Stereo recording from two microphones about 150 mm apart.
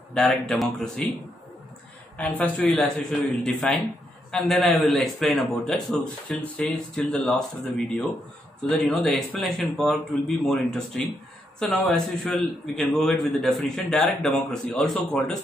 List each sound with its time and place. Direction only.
0.1 s a man's voice: 5° left (ahead or behind)